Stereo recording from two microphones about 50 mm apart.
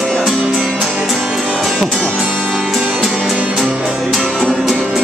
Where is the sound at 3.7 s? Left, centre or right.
Right.